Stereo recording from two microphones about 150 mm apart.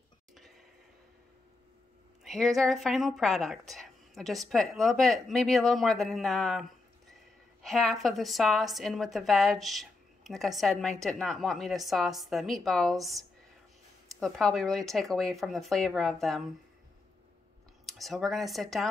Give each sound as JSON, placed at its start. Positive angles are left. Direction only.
{"t": 2.2, "sound": "a woman's voice", "side_deg": 0}
{"t": 14.2, "sound": "a woman's voice", "side_deg": 0}
{"t": 17.8, "sound": "a woman's voice", "side_deg": 0}